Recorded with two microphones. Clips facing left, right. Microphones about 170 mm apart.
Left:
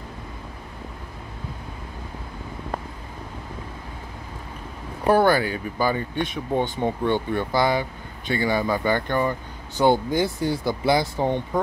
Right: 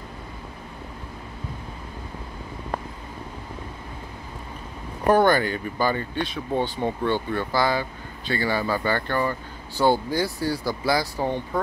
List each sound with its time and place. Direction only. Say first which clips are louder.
5.0 s speech: even; 10° left (ahead or behind)